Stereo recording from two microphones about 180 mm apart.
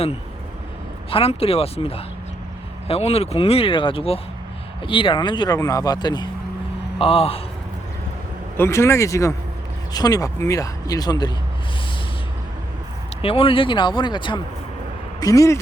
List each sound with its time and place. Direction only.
1.1 s speech: 35° left (ahead or behind)
8.5 s speech: 15° left (ahead or behind)
13.2 s speech: 30° left (ahead or behind)